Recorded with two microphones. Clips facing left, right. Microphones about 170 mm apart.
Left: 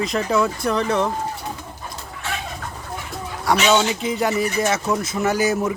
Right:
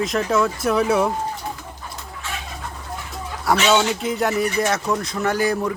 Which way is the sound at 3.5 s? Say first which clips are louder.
Even; centre (ahead or behind).